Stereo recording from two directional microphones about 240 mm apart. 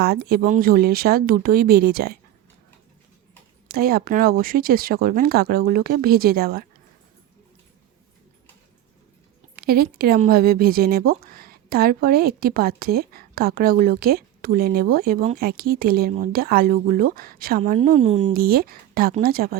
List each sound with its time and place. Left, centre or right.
0.0 s speech: right
3.7 s speech: right
9.6 s speech: right